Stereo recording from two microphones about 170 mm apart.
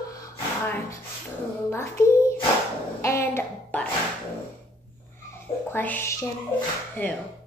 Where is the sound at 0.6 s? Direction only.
15° left (ahead or behind).